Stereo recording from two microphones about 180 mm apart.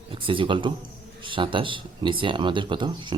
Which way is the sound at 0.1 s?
30° right (ahead or behind).